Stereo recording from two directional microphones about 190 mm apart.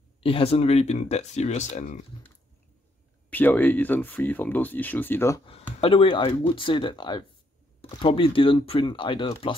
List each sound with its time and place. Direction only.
0.2 s speech: 30° left (ahead or behind)
3.3 s speech: 10° left (ahead or behind)
5.4 s speech: 30° left (ahead or behind)